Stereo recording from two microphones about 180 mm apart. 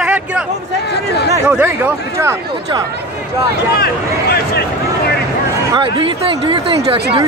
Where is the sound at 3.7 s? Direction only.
60° left (ahead or behind).